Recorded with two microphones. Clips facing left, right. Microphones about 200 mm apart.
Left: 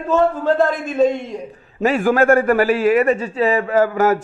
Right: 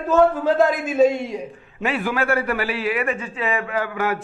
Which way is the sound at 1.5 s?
40° left (ahead or behind).